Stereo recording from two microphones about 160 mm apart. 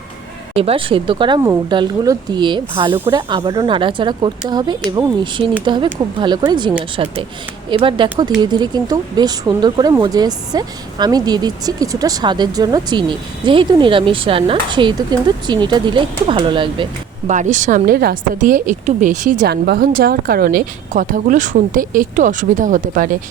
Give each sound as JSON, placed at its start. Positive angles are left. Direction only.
{"t": 0.5, "sound": "speech", "side_deg": -35}
{"t": 17.2, "sound": "a woman's voice", "side_deg": -50}
{"t": 19.5, "sound": "speech", "side_deg": -90}